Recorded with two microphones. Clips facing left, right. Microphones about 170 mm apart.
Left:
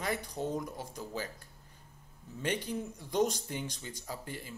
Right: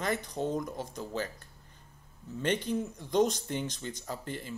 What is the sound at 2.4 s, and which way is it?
Speech, 10° left (ahead or behind).